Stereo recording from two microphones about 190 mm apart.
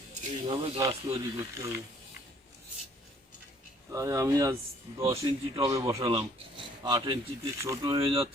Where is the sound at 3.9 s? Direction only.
15° right (ahead or behind).